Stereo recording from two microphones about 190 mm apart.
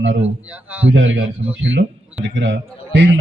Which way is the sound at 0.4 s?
10° right (ahead or behind).